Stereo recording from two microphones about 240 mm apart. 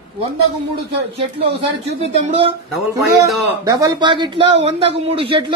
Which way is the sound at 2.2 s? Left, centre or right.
Right.